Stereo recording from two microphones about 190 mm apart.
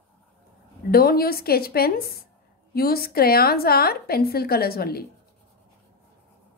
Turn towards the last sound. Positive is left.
turn(degrees=55)  # may be behind; listen again after turning